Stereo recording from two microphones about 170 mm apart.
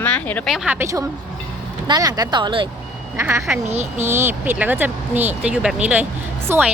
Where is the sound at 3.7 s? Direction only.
40° right (ahead or behind).